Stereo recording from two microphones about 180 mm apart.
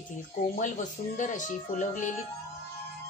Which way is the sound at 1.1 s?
45° left (ahead or behind).